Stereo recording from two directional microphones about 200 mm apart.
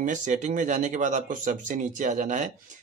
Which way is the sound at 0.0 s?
40° right (ahead or behind).